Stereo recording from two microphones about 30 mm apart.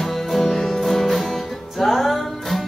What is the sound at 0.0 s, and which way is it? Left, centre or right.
Music, centre.